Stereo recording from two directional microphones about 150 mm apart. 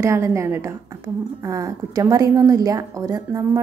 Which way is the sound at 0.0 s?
20° right (ahead or behind).